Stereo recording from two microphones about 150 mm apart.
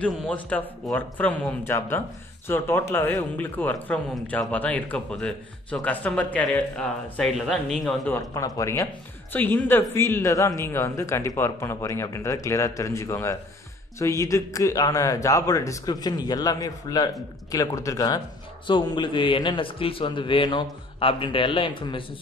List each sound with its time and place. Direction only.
0.0 s speech: 10° left (ahead or behind)
8.1 s a man's voice: 20° left (ahead or behind)